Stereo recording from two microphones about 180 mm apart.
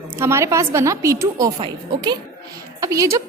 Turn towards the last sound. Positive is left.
turn(degrees=-20)  # may be behind; listen again after turning